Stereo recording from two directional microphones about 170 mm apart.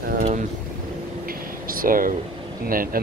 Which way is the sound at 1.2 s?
55° right (ahead or behind).